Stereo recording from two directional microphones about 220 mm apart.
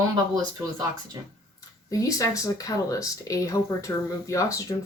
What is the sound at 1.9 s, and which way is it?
Speech, 15° left (ahead or behind).